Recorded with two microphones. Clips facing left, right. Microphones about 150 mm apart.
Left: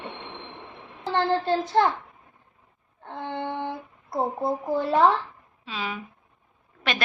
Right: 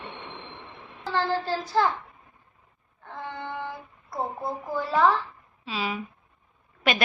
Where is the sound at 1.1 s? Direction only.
20° left (ahead or behind).